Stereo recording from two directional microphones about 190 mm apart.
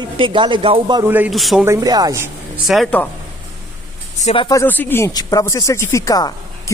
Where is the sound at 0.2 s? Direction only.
25° right (ahead or behind).